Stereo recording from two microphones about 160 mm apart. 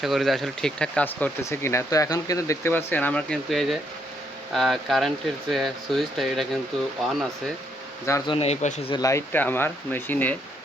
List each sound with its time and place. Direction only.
0.0 s speech: centre (ahead or behind)
8.3 s speech: 40° left (ahead or behind)
9.0 s speech: 20° left (ahead or behind)